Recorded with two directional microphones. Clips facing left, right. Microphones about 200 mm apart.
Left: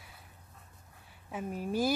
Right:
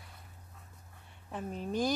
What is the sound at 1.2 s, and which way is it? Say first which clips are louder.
Speech: left 2 dB; 5° left (ahead or behind).